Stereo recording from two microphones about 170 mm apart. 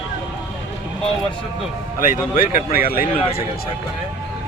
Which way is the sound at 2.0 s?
55° left (ahead or behind).